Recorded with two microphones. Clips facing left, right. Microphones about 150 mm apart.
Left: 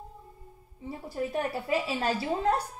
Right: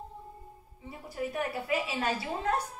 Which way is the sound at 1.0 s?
30° left (ahead or behind).